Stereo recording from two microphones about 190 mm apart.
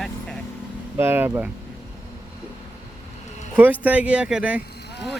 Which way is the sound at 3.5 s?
10° right (ahead or behind).